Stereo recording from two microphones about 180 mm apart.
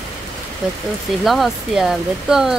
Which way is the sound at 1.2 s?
Centre (ahead or behind).